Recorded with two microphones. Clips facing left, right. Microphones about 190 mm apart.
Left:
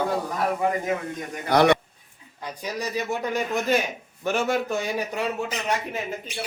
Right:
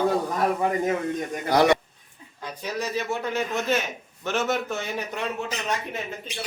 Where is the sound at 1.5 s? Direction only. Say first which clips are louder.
Left 1 dB; 60° left (ahead or behind).